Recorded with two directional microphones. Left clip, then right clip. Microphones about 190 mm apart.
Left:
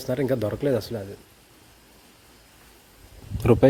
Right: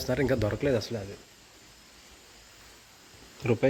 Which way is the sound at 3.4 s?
40° left (ahead or behind).